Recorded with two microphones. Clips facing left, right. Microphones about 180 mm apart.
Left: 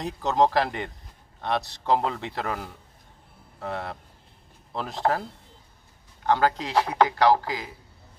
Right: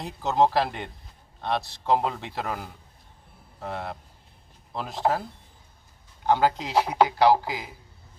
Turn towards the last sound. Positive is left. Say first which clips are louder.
# right 1 dB
turn(degrees=-10)  # may be behind; listen again after turning